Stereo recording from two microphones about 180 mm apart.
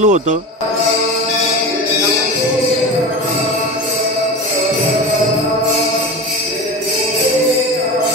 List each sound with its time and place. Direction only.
0.0 s speech: 40° right (ahead or behind)